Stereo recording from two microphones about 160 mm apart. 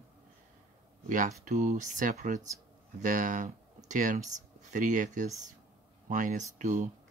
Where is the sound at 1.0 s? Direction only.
55° right (ahead or behind).